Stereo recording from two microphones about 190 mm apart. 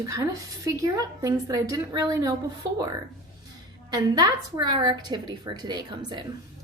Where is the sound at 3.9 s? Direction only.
20° right (ahead or behind).